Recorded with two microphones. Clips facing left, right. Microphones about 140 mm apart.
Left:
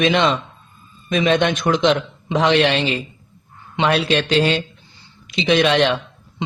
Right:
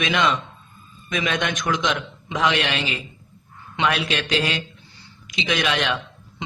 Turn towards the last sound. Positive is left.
turn(degrees=30)  # may be behind; listen again after turning